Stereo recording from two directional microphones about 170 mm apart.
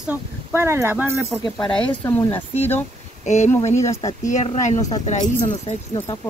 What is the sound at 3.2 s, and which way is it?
Speech, 45° left (ahead or behind).